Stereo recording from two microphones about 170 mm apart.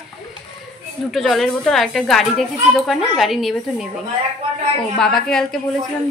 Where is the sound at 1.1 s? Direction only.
Centre (ahead or behind).